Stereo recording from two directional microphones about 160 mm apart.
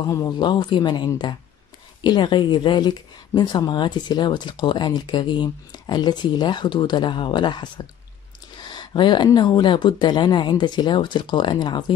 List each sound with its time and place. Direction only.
0.1 s speech: 25° left (ahead or behind)